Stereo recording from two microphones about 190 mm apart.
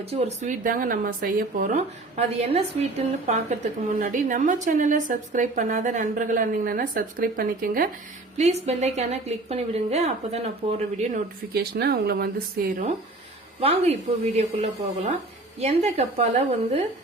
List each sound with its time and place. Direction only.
0.0 s a woman's voice: 30° right (ahead or behind)
0.6 s a woman's voice: 45° right (ahead or behind)
8.4 s a woman's voice: 35° right (ahead or behind)
11.5 s speech: 55° right (ahead or behind)
13.6 s a woman's voice: 35° right (ahead or behind)